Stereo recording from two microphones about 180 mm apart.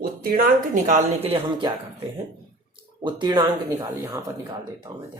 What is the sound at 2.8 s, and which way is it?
Speech, 25° right (ahead or behind).